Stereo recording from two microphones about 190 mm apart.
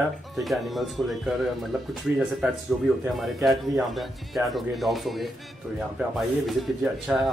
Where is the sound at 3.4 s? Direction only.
Centre (ahead or behind).